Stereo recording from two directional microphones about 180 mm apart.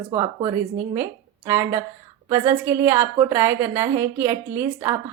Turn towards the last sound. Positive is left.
turn(degrees=-15)  # may be behind; listen again after turning